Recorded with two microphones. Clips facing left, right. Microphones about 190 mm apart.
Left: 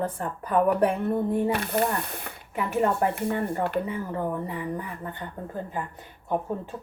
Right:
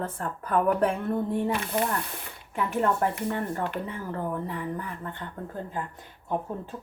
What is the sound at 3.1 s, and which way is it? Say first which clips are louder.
Speech: left 3 dB; 55° left (ahead or behind).